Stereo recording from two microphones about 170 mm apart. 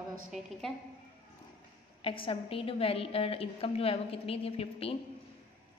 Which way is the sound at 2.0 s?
30° left (ahead or behind).